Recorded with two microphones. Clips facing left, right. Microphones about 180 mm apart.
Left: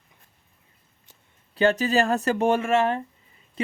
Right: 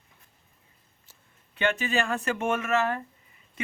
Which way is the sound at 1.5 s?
40° left (ahead or behind).